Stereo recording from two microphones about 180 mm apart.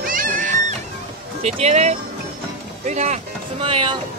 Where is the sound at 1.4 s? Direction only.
35° right (ahead or behind).